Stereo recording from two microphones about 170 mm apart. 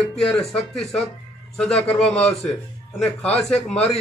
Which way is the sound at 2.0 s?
35° left (ahead or behind).